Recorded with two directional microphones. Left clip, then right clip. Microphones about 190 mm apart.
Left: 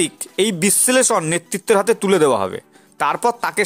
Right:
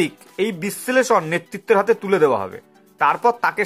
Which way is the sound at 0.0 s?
35° left (ahead or behind).